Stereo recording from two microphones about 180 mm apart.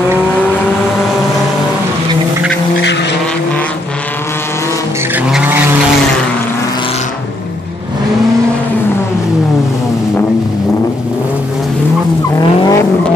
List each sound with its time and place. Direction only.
2.8 s vehicle: 75° left (ahead or behind)
5.1 s vehicle: 10° right (ahead or behind)
12.4 s vehicle: 20° left (ahead or behind)